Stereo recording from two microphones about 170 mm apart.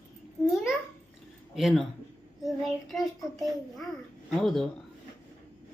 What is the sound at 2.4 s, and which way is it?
Child singing, centre (ahead or behind).